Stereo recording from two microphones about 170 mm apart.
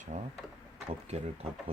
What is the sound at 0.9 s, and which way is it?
Speech, 35° right (ahead or behind).